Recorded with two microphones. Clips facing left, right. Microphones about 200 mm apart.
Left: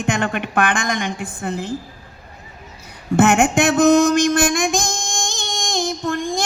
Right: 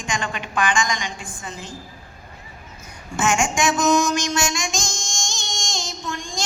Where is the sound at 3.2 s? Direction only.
60° left (ahead or behind).